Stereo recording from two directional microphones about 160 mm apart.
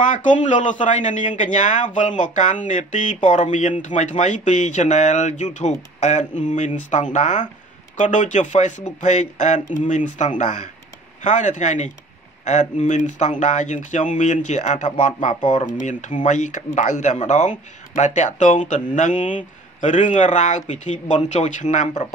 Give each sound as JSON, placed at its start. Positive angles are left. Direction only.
{"t": 0.0, "sound": "a man's voice", "side_deg": 50}